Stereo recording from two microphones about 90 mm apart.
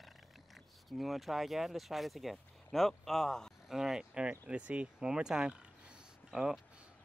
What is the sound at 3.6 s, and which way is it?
Speech, 5° right (ahead or behind).